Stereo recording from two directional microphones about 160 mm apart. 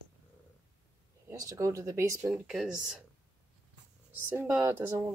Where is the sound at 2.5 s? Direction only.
5° right (ahead or behind).